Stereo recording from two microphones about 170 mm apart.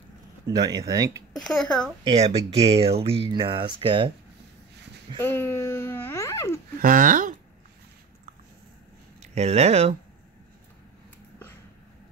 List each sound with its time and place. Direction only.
0.5 s speech: 25° right (ahead or behind)
1.3 s speech: centre (ahead or behind)
2.0 s speech: 35° right (ahead or behind)
5.2 s speech: 15° left (ahead or behind)
6.8 s speech: 50° right (ahead or behind)
9.2 s speech: 40° right (ahead or behind)